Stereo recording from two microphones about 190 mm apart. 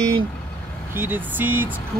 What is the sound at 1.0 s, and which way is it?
Speech, 10° right (ahead or behind).